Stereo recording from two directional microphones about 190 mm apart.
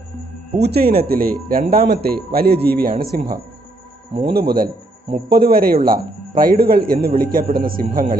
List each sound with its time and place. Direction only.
0.6 s a man's voice: 55° right (ahead or behind)